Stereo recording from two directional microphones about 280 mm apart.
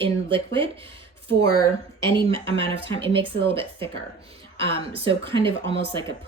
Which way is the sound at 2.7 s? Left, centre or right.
Centre.